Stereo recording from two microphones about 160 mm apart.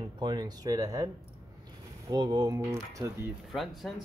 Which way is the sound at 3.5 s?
Centre (ahead or behind).